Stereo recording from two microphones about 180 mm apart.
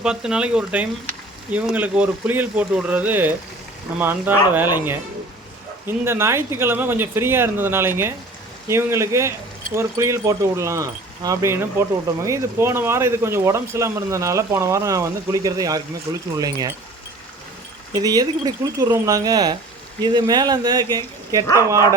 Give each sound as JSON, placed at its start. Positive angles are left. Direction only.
{"t": 0.0, "sound": "speech", "side_deg": -5}
{"t": 6.1, "sound": "speech", "side_deg": -15}
{"t": 17.9, "sound": "speech", "side_deg": -20}
{"t": 21.4, "sound": "speech", "side_deg": 15}